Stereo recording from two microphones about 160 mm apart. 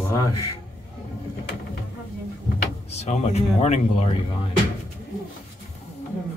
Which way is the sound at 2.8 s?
45° left (ahead or behind).